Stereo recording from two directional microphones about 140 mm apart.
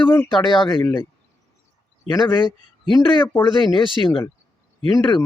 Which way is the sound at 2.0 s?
35° left (ahead or behind).